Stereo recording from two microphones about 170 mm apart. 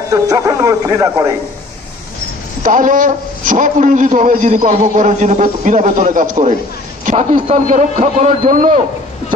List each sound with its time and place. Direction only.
0.1 s speech: 20° right (ahead or behind)
2.6 s a man's voice: 50° right (ahead or behind)